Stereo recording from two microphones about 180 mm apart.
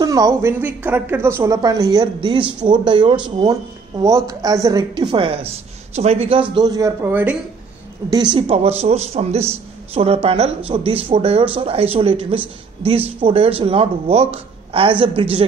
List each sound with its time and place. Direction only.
0.0 s a woman's voice: 20° right (ahead or behind)
6.5 s a man's voice: 20° right (ahead or behind)
8.1 s a man's voice: 25° right (ahead or behind)